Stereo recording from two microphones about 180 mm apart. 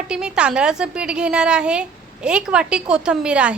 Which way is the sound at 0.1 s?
5° right (ahead or behind).